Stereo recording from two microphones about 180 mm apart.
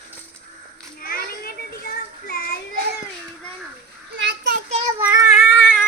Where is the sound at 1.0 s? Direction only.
55° left (ahead or behind).